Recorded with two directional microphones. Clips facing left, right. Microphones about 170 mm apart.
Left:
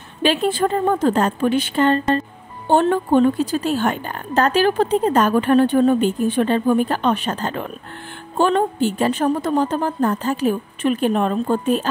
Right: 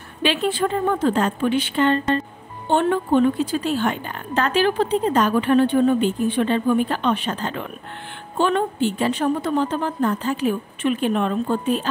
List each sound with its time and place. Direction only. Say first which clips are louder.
0.2 s a woman's voice: left 3 dB; 40° left (ahead or behind)